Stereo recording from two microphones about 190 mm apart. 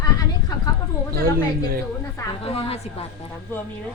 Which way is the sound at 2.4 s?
30° left (ahead or behind).